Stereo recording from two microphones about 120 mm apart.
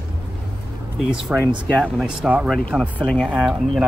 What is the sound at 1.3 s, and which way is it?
Speech, 5° right (ahead or behind).